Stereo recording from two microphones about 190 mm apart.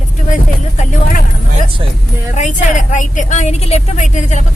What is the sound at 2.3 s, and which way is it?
A woman's voice, 40° left (ahead or behind).